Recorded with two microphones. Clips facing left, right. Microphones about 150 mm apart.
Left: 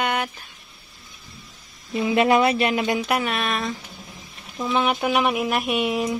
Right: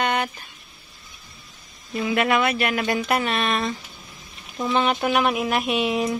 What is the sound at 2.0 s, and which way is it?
Speech, 25° left (ahead or behind).